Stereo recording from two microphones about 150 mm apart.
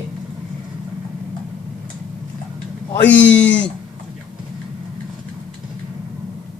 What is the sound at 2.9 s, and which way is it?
Speech, 10° left (ahead or behind).